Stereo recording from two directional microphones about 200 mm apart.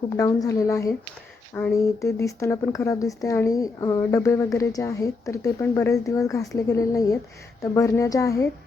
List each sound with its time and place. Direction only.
0.2 s speech: 15° left (ahead or behind)